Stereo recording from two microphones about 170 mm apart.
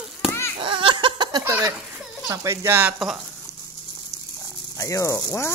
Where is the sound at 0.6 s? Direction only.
30° right (ahead or behind).